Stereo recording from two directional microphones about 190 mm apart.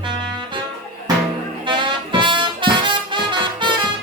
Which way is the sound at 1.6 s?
25° right (ahead or behind).